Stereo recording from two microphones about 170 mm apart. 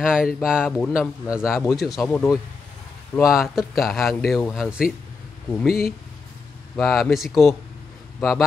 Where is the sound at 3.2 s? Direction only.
Centre (ahead or behind).